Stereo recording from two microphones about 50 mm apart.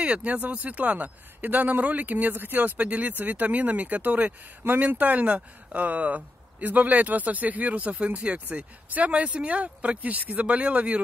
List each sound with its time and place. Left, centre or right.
0.0 s speech: right
2.8 s speech: right